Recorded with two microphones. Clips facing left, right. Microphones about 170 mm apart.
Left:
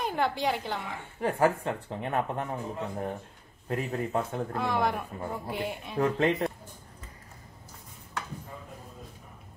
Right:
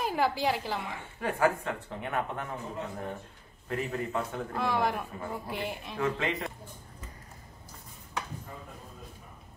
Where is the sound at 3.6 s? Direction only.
35° left (ahead or behind).